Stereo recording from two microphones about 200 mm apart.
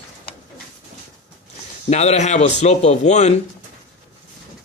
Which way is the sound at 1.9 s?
35° left (ahead or behind).